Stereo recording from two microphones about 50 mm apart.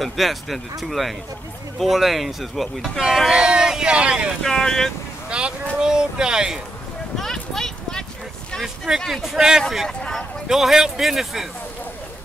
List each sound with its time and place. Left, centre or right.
0.0 s speech: centre; by 4.3 s right
4.4 s speech: centre
5.3 s speech: centre
7.2 s a sound: centre
9.0 s speech: centre
9.8 s speech: centre
10.5 s speech: centre